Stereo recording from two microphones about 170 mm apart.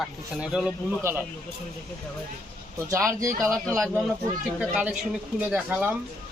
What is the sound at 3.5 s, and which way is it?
Speech, 5° left (ahead or behind).